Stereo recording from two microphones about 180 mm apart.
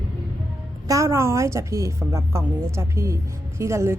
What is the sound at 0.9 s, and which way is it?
A woman's voice, 15° right (ahead or behind).